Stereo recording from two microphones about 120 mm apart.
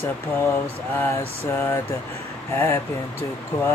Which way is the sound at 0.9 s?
20° left (ahead or behind).